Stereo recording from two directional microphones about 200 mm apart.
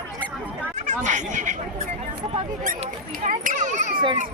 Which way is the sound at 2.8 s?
40° right (ahead or behind).